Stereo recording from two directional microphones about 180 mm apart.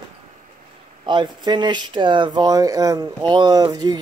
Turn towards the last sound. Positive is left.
turn(degrees=-20)  # may be behind; listen again after turning